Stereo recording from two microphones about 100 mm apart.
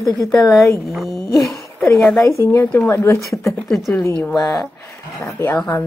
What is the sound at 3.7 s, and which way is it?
Speech, 5° left (ahead or behind).